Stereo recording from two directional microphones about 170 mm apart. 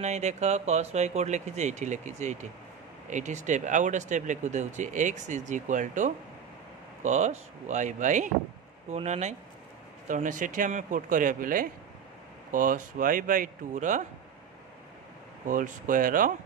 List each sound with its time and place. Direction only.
0.0 s speech: 40° right (ahead or behind)
15.4 s speech: 50° right (ahead or behind)